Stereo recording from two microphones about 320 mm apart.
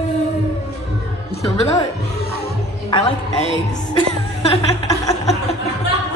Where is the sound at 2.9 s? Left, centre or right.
Centre.